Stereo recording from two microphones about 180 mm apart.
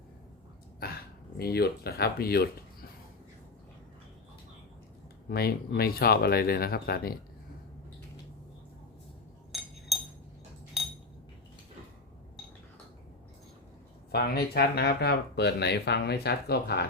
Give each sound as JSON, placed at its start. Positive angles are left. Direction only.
{"t": 0.8, "sound": "a sound", "side_deg": 60}
{"t": 1.4, "sound": "speech", "side_deg": 60}
{"t": 5.3, "sound": "speech", "side_deg": 60}
{"t": 14.1, "sound": "speech", "side_deg": 60}